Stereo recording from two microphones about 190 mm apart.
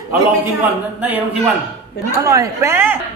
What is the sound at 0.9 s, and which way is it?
Speech, 10° right (ahead or behind).